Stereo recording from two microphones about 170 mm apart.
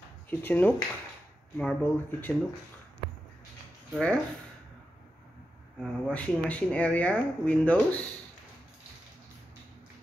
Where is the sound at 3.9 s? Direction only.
5° left (ahead or behind).